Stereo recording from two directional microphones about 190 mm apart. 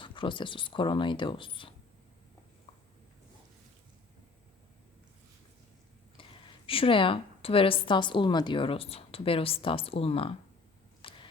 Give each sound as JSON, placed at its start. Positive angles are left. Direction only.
{"t": 0.0, "sound": "a woman's voice", "side_deg": 25}
{"t": 6.7, "sound": "a woman's voice", "side_deg": 30}
{"t": 11.0, "sound": "a sound", "side_deg": 30}